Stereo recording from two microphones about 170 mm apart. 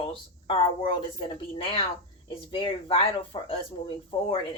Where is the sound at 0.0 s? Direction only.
30° left (ahead or behind).